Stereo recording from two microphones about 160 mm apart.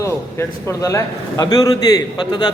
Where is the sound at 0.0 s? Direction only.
20° left (ahead or behind).